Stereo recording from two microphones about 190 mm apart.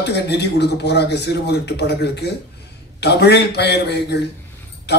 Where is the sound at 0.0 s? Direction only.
60° left (ahead or behind).